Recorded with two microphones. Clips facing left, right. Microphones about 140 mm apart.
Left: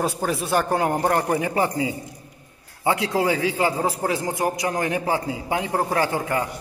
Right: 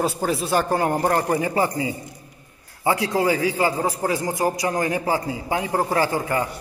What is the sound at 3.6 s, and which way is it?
Speech, 5° left (ahead or behind).